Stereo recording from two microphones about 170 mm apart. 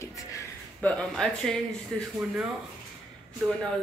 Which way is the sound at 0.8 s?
5° left (ahead or behind).